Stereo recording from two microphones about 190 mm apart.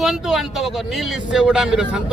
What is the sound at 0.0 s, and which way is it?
A man's voice, centre (ahead or behind).